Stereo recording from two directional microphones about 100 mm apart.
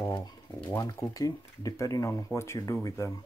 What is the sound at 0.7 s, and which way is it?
Speech, 30° left (ahead or behind).